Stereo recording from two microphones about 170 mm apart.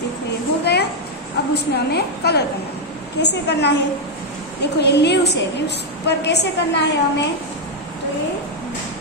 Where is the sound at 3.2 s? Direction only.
85° left.